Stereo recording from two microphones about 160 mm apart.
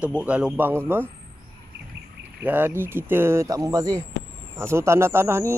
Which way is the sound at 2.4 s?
10° right (ahead or behind).